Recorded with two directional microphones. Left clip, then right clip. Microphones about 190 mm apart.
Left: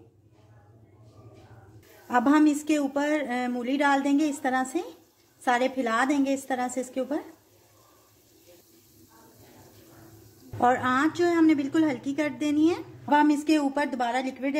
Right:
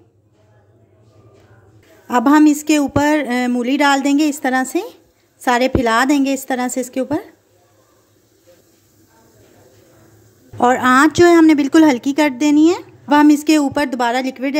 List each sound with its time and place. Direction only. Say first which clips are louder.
2.0 s a woman's voice: right 10 dB; 35° right (ahead or behind)
10.6 s a woman's voice: right 11 dB; 40° right (ahead or behind)